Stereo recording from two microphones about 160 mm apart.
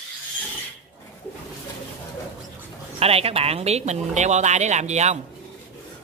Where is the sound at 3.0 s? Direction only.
40° right (ahead or behind).